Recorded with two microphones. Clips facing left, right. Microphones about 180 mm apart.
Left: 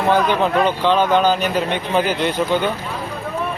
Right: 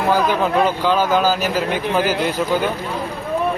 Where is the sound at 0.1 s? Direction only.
5° right (ahead or behind).